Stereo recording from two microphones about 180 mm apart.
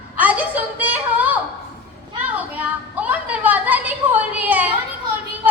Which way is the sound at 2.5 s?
10° right (ahead or behind).